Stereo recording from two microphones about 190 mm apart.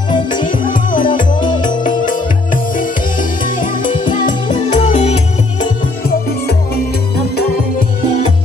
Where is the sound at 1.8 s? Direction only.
45° left (ahead or behind).